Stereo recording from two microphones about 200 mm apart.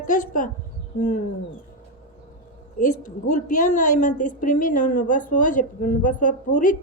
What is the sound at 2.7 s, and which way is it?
A woman's voice, 40° left (ahead or behind).